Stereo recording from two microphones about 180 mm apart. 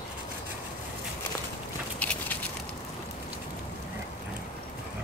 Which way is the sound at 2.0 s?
5° left (ahead or behind).